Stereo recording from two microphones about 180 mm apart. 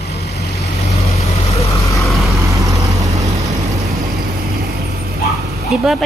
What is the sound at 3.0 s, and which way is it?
Vehicle, 20° right (ahead or behind).